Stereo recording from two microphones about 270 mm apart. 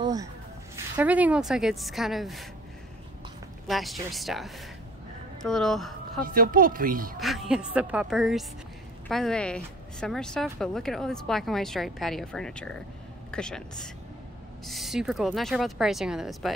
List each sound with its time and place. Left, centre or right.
0.0 s a sound: centre
0.9 s speech: centre
3.6 s speech: centre
6.2 s speech: right
7.2 s speech: centre